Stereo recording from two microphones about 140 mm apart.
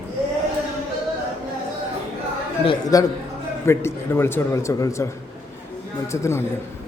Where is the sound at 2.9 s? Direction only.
25° left (ahead or behind).